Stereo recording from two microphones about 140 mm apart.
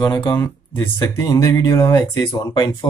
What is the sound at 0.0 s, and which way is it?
Speech, 30° left (ahead or behind).